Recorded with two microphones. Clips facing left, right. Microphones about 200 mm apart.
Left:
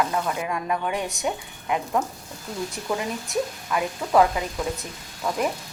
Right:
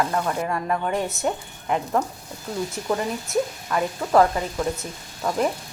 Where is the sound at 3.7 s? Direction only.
5° left (ahead or behind).